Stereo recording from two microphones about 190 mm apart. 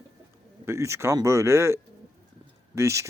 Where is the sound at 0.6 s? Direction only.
15° right (ahead or behind).